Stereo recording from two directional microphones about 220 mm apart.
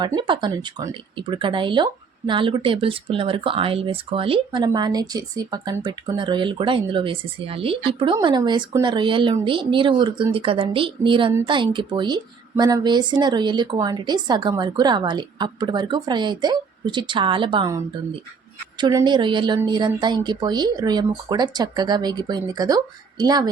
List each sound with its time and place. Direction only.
0.0 s speech: 20° right (ahead or behind)